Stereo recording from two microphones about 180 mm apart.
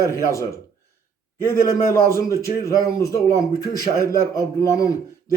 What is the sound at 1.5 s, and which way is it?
A man's voice, 15° left (ahead or behind).